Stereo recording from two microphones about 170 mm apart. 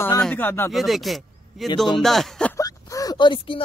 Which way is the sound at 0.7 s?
Centre (ahead or behind).